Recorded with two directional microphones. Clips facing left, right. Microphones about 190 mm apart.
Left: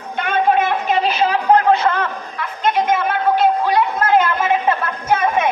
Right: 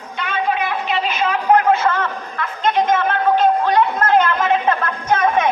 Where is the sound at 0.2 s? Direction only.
50° left (ahead or behind); by 1.4 s 35° left (ahead or behind).